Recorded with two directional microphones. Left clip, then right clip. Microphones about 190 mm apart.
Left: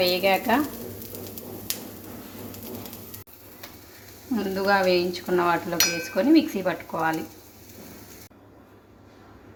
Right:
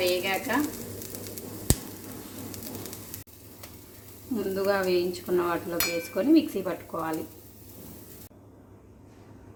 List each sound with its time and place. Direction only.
0.0 s frying: 35° left (ahead or behind)
4.4 s speech: 15° left (ahead or behind)
5.8 s speech: 40° left (ahead or behind)
6.1 s speech: 15° left (ahead or behind)